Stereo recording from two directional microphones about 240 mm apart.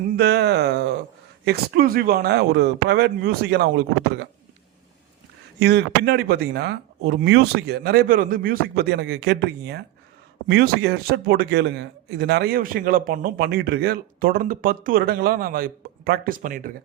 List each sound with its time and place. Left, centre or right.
0.0 s speech: right
5.5 s a man's voice: right